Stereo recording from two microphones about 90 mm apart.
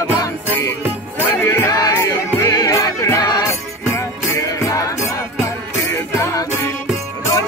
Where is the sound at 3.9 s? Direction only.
30° left (ahead or behind).